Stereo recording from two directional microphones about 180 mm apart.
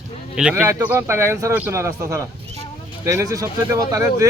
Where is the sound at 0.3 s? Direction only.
5° right (ahead or behind).